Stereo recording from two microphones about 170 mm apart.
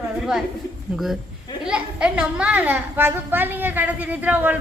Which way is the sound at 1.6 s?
5° right (ahead or behind).